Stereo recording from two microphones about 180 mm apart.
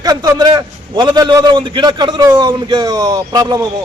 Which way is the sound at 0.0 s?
20° right (ahead or behind).